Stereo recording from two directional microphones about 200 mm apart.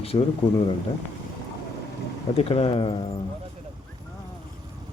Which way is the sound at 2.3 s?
30° left (ahead or behind).